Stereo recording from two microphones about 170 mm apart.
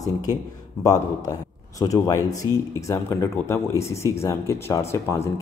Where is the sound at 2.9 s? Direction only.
15° left (ahead or behind).